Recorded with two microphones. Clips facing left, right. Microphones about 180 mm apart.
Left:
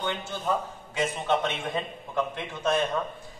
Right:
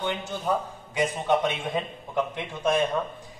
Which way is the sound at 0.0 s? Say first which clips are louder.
Right 2 dB; 10° right (ahead or behind).